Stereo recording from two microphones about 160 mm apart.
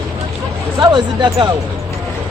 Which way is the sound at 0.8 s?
30° right (ahead or behind).